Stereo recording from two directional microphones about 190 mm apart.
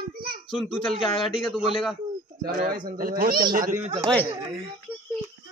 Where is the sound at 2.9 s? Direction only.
50° right (ahead or behind).